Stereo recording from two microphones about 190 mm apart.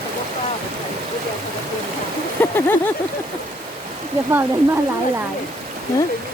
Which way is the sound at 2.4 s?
10° left (ahead or behind).